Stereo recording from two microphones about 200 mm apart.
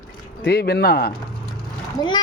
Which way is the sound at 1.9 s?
20° left (ahead or behind).